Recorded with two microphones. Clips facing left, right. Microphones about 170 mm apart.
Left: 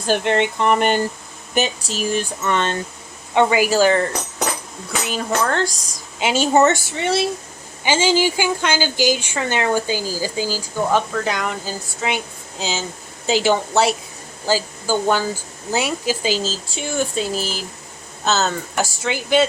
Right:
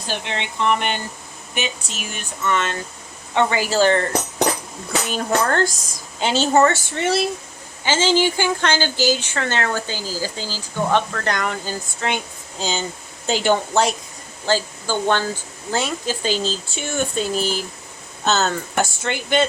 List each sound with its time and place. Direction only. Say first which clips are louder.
0.1 s speech: left 10 dB; 50° left (ahead or behind); by 2.7 s 30° left (ahead or behind)
3.3 s speech: left 3 dB; 15° left (ahead or behind)
5.0 s speech: even; centre (ahead or behind)
6.1 s speech: left 1 dB; 10° left (ahead or behind)
6.9 s speech: even; centre (ahead or behind)
7.9 s speech: left 1 dB; 10° left (ahead or behind)